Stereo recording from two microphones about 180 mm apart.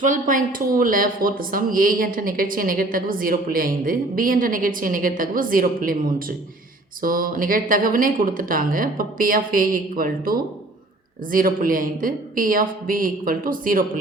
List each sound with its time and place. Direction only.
0.0 s speech: 45° right (ahead or behind)